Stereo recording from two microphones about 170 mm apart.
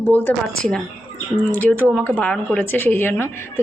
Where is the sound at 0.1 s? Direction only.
10° left (ahead or behind).